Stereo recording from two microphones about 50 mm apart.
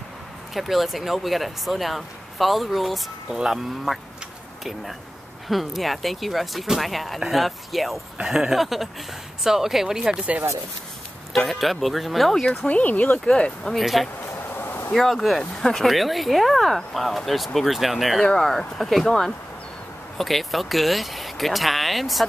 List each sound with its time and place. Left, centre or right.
0.6 s speech: centre
3.3 s speech: centre
5.5 s speech: centre
8.2 s speech: centre
11.3 s speech: centre
12.4 s speech: left
13.2 s speech: centre
13.7 s speech: centre
14.5 s a sound: left
15.0 s speech: centre